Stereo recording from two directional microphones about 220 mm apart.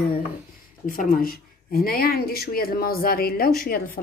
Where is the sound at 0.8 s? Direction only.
40° left (ahead or behind).